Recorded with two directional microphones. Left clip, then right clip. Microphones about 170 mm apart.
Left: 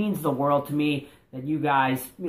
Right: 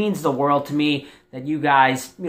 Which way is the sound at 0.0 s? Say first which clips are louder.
Right 5 dB; 20° right (ahead or behind).